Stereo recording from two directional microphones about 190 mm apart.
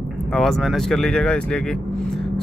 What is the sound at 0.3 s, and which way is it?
Speech, centre (ahead or behind).